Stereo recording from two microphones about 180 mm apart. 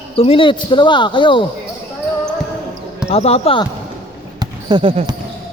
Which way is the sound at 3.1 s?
35° left (ahead or behind).